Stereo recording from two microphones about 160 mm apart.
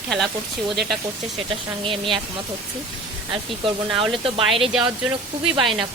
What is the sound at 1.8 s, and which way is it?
Speech, 30° right (ahead or behind).